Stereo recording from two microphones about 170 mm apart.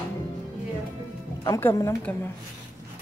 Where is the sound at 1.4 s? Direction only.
20° left (ahead or behind).